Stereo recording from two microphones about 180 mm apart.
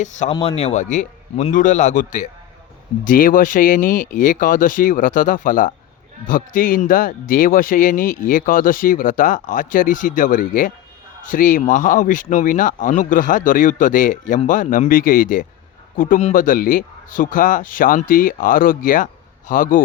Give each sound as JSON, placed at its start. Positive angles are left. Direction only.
{"t": 0.0, "sound": "a man's voice", "side_deg": 40}